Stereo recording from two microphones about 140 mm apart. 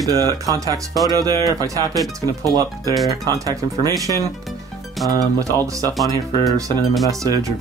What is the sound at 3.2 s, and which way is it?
Speech, 25° right (ahead or behind).